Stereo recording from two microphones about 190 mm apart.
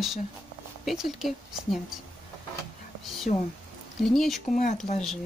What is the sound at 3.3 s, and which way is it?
Speech, 45° left (ahead or behind).